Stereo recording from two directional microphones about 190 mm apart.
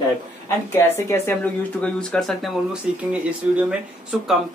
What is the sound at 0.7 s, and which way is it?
Speech, 10° left (ahead or behind).